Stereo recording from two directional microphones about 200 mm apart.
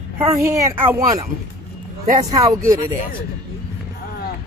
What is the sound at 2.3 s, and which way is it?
Speech, 15° right (ahead or behind).